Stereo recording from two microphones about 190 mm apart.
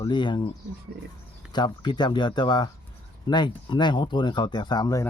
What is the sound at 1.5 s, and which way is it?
Speech, 25° left (ahead or behind).